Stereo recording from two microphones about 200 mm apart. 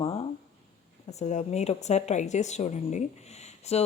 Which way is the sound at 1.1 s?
35° left (ahead or behind).